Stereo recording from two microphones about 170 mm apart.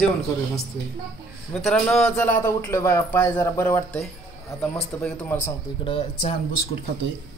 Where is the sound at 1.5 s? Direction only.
Centre (ahead or behind).